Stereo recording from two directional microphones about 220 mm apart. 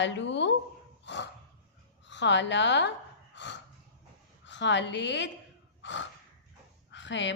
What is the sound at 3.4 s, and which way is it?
Snort, 55° left (ahead or behind).